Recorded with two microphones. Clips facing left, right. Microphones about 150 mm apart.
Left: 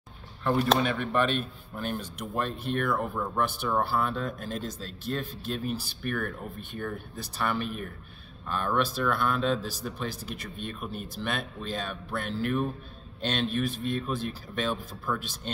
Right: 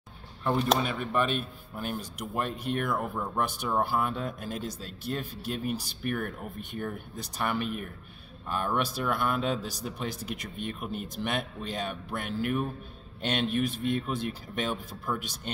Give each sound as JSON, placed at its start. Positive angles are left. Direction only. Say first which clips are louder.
{"t": 0.4, "sound": "speech", "louder": "left 2 dB", "side_deg": -10}